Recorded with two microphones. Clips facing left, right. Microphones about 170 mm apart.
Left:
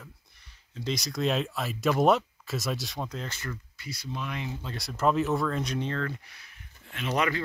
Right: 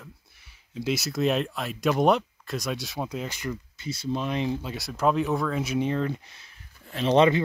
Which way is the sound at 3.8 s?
25° right (ahead or behind).